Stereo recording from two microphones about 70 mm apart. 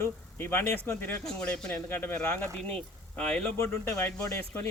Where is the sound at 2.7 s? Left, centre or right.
Centre.